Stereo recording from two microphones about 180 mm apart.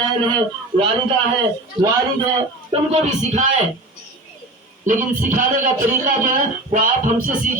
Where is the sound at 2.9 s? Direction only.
40° right (ahead or behind).